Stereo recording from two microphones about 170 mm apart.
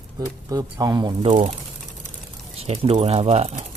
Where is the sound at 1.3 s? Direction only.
35° right (ahead or behind).